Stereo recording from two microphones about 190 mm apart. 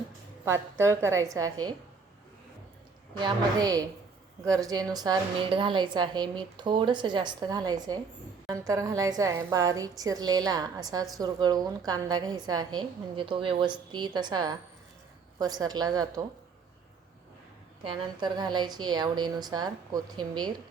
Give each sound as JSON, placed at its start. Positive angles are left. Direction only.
{"t": 0.4, "sound": "a woman's voice", "side_deg": -15}
{"t": 3.2, "sound": "a woman's voice", "side_deg": -20}
{"t": 17.8, "sound": "a woman's voice", "side_deg": -25}